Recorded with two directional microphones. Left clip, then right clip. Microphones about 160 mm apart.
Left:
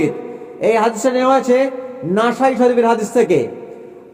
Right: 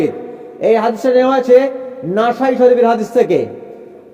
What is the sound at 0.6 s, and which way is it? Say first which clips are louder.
A man's voice: right 2 dB; 20° left (ahead or behind).